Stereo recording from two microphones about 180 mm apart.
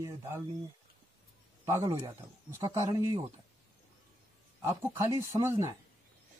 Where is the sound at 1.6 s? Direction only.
15° right (ahead or behind).